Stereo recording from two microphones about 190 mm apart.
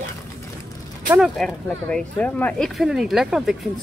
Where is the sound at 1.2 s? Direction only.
Centre (ahead or behind).